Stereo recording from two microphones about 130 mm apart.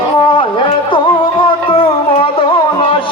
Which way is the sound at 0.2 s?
40° left (ahead or behind).